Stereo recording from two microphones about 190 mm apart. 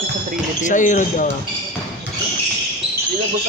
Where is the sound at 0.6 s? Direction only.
40° left (ahead or behind).